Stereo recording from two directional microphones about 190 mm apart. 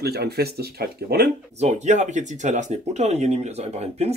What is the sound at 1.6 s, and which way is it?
Speech, 35° right (ahead or behind).